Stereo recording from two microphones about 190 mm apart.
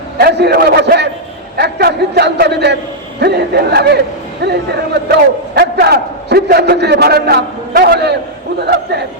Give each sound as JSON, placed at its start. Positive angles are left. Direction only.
{"t": 0.2, "sound": "a man's voice", "side_deg": -60}